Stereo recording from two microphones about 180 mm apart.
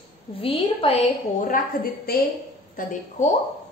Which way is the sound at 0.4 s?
30° left (ahead or behind).